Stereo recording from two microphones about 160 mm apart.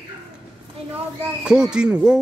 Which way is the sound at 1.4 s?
5° right (ahead or behind).